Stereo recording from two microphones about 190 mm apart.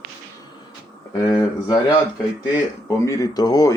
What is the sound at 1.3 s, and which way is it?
Speech, 20° left (ahead or behind).